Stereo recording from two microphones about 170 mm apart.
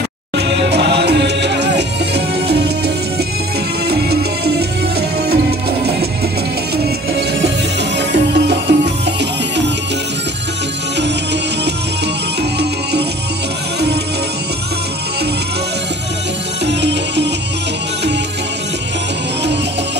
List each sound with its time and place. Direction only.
0.4 s music: 85° right
3.8 s music: 70° right (ahead or behind)
8.1 s music: 80° right
16.6 s music: 90° right